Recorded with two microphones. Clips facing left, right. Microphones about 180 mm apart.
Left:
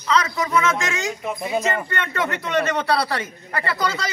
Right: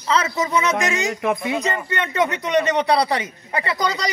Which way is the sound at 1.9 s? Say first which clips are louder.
Right 4 dB; 20° right (ahead or behind).